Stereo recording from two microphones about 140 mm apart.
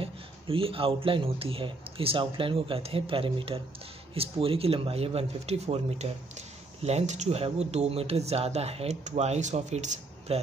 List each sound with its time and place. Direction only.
0.0 s speech: 40° right (ahead or behind)